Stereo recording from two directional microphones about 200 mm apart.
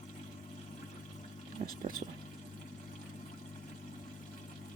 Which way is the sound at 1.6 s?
35° right (ahead or behind).